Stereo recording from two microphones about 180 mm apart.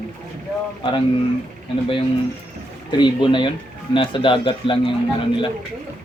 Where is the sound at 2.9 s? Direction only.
25° left (ahead or behind).